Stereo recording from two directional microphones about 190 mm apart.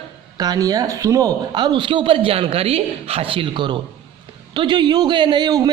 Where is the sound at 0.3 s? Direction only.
20° right (ahead or behind).